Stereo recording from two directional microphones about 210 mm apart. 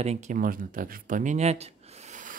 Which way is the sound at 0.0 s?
30° right (ahead or behind).